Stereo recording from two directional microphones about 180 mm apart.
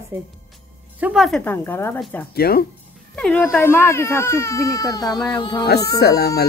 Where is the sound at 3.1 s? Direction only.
10° left (ahead or behind); by 5.6 s 25° left (ahead or behind).